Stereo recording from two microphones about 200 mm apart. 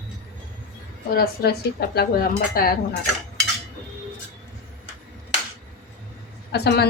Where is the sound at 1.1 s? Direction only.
50° left (ahead or behind).